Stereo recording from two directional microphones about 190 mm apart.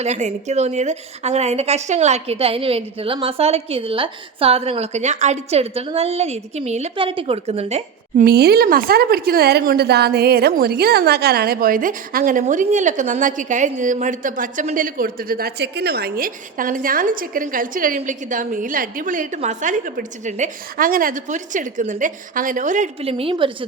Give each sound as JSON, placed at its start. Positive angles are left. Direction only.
{"t": 0.0, "sound": "a woman's voice", "side_deg": -40}
{"t": 8.2, "sound": "speech", "side_deg": -55}